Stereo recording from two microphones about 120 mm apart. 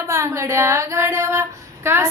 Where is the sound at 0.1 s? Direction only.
25° right (ahead or behind).